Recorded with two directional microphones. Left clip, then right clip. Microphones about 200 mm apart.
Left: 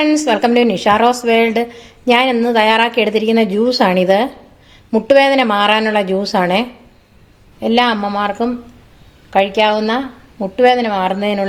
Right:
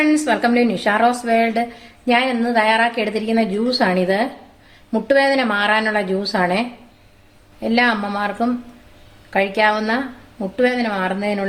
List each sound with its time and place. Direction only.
0.0 s a woman's voice: 30° left (ahead or behind)
7.6 s speech: 30° left (ahead or behind)